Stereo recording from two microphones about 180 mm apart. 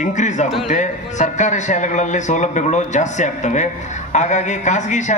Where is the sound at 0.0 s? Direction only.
45° left (ahead or behind).